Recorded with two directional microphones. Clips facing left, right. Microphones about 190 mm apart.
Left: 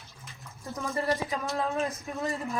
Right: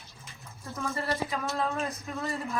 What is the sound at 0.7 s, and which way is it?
Speech, 15° left (ahead or behind).